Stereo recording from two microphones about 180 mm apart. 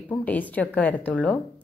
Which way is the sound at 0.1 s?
10° left (ahead or behind).